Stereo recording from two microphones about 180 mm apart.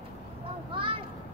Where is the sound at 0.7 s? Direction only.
30° right (ahead or behind).